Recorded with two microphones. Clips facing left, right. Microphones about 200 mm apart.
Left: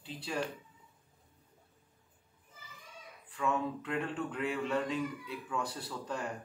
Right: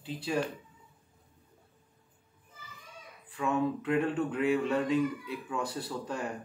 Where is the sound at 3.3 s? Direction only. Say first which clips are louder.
Right 4 dB; 10° right (ahead or behind).